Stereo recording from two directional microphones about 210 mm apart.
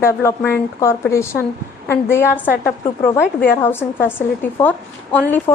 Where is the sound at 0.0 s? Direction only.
10° left (ahead or behind).